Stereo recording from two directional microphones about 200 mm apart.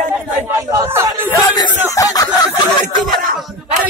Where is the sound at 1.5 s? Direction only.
20° left (ahead or behind).